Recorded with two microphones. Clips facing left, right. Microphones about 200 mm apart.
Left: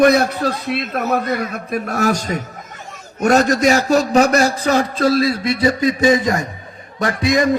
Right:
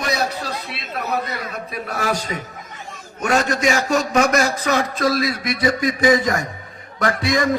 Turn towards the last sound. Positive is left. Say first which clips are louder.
# left 3 dB
turn(degrees=20)  # may be behind; listen again after turning